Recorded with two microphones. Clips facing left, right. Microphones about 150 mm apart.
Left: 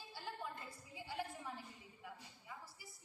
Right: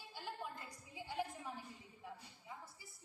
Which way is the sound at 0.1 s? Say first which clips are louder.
Right 1 dB; 15° right (ahead or behind).